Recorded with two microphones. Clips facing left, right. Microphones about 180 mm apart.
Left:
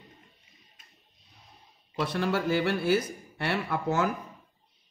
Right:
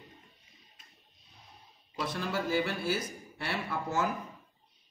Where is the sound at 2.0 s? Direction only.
65° left (ahead or behind).